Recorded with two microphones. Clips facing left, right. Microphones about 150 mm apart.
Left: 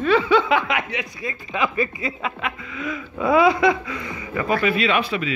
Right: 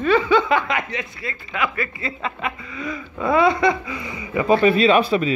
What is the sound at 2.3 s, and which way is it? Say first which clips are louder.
Speech: right 1 dB; centre (ahead or behind).